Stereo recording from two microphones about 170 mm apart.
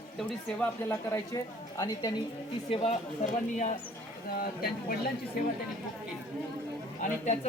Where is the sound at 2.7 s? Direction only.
35° left (ahead or behind).